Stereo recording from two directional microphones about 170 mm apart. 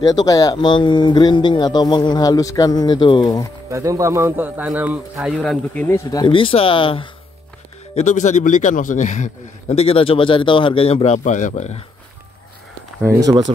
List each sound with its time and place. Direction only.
0.0 s speech: 20° left (ahead or behind)
3.7 s a man's voice: 20° right (ahead or behind); by 5.9 s centre (ahead or behind)
5.9 s a man's voice: 20° left (ahead or behind)
7.9 s a man's voice: 45° left (ahead or behind)
13.0 s speech: 20° right (ahead or behind)